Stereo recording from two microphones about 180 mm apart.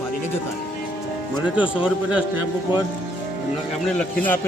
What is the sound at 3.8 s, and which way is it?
Speech, 5° left (ahead or behind).